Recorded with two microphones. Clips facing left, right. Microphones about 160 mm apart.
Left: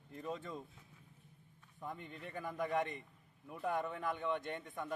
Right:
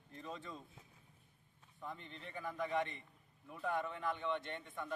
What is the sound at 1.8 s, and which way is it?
Speech, 10° left (ahead or behind).